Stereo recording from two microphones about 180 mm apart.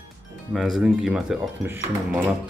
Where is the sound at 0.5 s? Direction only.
Centre (ahead or behind).